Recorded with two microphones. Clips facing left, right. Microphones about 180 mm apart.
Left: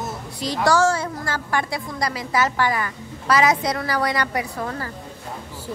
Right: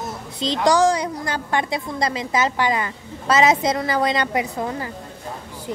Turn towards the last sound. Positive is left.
turn(degrees=-20)  # may be behind; listen again after turning